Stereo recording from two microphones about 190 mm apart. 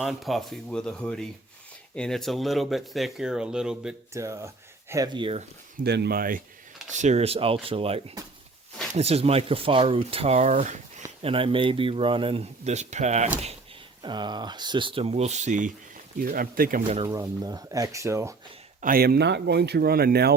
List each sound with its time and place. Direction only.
0.0 s speech: centre (ahead or behind)
4.1 s speech: 15° right (ahead or behind)
5.7 s speech: 60° right (ahead or behind)
6.9 s speech: 35° right (ahead or behind)
11.2 s speech: 30° right (ahead or behind)
14.0 s speech: 25° right (ahead or behind); by 16.8 s 50° right (ahead or behind)
17.1 s speech: 20° right (ahead or behind)
18.8 s speech: 50° right (ahead or behind)